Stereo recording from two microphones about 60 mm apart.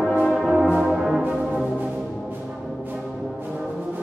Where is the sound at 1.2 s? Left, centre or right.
Right.